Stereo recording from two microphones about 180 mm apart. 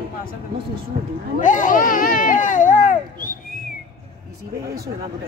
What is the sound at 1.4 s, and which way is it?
Speech, 45° left (ahead or behind).